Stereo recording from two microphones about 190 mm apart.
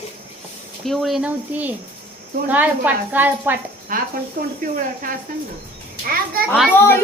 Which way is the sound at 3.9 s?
45° right (ahead or behind).